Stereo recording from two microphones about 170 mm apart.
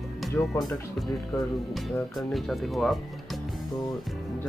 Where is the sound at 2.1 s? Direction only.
Centre (ahead or behind).